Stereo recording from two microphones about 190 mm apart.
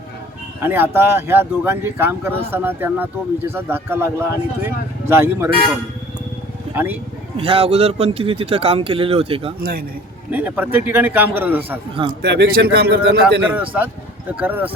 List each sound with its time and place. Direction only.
0.6 s speech: 10° right (ahead or behind)
6.7 s speech: 10° right (ahead or behind)
7.3 s speech: 30° right (ahead or behind)
9.6 s a man's voice: 50° right (ahead or behind)
10.3 s speech: 10° right (ahead or behind)
12.2 s a man's voice: 60° right (ahead or behind)
13.5 s speech: 10° right (ahead or behind)